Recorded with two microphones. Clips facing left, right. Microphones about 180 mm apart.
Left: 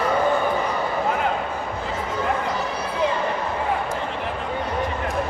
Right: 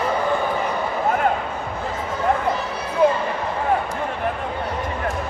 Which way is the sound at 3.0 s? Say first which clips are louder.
Right 6 dB; 55° right (ahead or behind).